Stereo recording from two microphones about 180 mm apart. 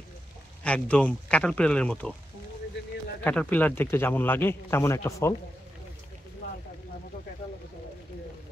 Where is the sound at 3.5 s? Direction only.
10° left (ahead or behind).